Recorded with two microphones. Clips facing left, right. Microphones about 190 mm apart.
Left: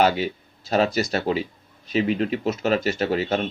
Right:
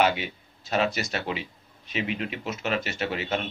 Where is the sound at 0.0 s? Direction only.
40° left (ahead or behind).